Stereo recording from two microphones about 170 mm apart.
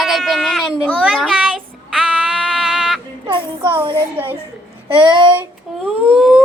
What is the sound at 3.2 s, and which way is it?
Speech, 30° right (ahead or behind).